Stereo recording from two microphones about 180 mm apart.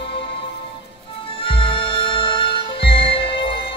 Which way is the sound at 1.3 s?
30° left (ahead or behind).